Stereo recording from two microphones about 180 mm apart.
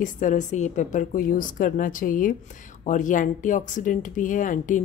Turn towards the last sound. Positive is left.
turn(degrees=45)  # may be behind; listen again after turning